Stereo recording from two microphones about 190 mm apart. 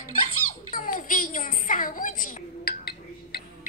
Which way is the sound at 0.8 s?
45° left (ahead or behind).